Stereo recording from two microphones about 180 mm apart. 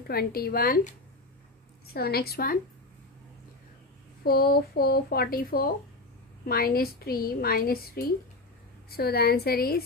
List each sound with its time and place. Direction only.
0.1 s a woman's voice: 55° left (ahead or behind)
2.0 s a woman's voice: 60° left (ahead or behind)
4.2 s a woman's voice: 60° left (ahead or behind)